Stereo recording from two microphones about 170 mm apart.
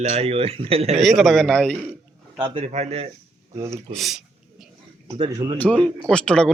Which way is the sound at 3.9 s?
Centre (ahead or behind).